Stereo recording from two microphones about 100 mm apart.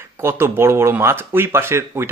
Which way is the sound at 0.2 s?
25° right (ahead or behind).